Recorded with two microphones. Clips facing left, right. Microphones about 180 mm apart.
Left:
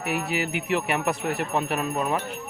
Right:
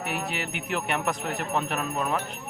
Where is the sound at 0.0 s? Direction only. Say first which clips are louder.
Left 4 dB; 5° left (ahead or behind).